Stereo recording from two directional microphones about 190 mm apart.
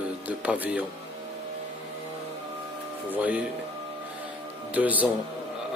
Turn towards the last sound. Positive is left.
turn(degrees=-10)  # may be behind; listen again after turning